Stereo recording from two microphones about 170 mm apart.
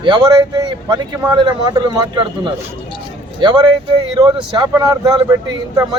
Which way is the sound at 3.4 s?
25° right (ahead or behind).